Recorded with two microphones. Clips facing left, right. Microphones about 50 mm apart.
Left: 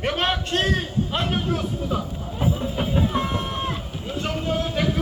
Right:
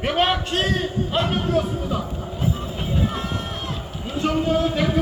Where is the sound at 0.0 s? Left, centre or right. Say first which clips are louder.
Right 3 dB; centre.